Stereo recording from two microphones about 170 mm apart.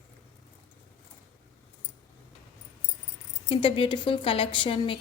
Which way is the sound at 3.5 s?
30° left (ahead or behind).